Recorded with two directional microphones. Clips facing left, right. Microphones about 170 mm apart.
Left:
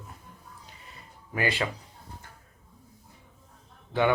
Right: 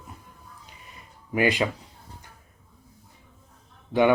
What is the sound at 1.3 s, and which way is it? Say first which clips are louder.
Speech: right 6 dB; 15° right (ahead or behind).